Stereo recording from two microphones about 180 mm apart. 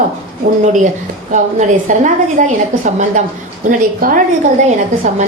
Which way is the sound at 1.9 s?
45° right (ahead or behind).